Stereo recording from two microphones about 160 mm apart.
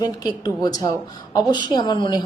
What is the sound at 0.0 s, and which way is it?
A woman's voice, 25° left (ahead or behind).